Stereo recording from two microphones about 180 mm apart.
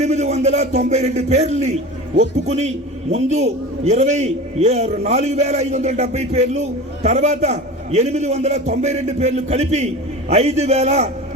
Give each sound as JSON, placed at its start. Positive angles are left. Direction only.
{"t": 0.0, "sound": "a man's voice", "side_deg": -35}